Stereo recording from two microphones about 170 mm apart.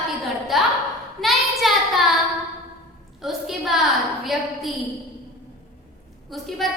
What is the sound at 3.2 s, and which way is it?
A woman's voice, centre (ahead or behind).